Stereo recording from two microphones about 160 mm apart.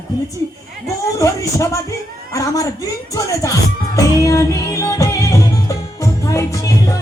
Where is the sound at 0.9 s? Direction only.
20° left (ahead or behind).